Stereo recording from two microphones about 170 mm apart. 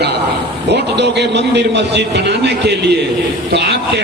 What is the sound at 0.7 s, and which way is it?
A man's voice, 90° right.